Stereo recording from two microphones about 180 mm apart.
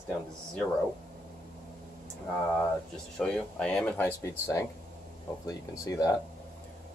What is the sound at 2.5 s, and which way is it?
Speech, 5° left (ahead or behind).